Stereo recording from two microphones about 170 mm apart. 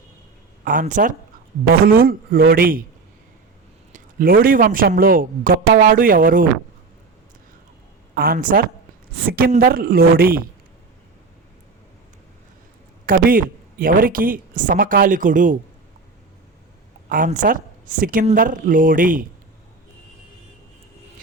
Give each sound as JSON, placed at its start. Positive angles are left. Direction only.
{"t": 0.6, "sound": "a woman's voice", "side_deg": -50}
{"t": 1.7, "sound": "speech", "side_deg": -60}
{"t": 3.9, "sound": "speech", "side_deg": -55}
{"t": 8.1, "sound": "speech", "side_deg": -60}
{"t": 13.1, "sound": "a woman's voice", "side_deg": -55}
{"t": 17.1, "sound": "a woman's voice", "side_deg": -55}